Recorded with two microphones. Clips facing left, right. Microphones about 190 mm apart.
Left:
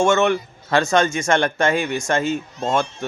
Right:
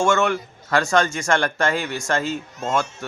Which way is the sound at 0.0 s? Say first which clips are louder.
Left 3 dB; 20° left (ahead or behind).